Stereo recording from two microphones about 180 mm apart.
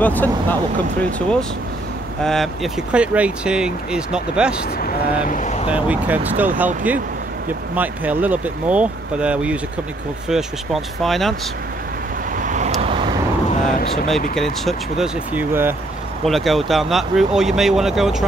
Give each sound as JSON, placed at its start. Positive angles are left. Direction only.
{"t": 0.0, "sound": "speech", "side_deg": 10}
{"t": 2.2, "sound": "speech", "side_deg": 0}
{"t": 4.7, "sound": "speech", "side_deg": 50}
{"t": 5.7, "sound": "speech", "side_deg": -10}
{"t": 7.7, "sound": "speech", "side_deg": -10}
{"t": 12.4, "sound": "vehicle", "side_deg": -45}
{"t": 13.7, "sound": "speech", "side_deg": 55}
{"t": 14.3, "sound": "speech", "side_deg": 0}
{"t": 15.3, "sound": "speech", "side_deg": -10}
{"t": 16.3, "sound": "speech", "side_deg": 0}